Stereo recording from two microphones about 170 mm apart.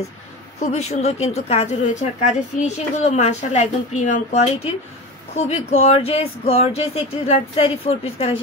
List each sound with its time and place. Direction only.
0.6 s speech: 40° left (ahead or behind)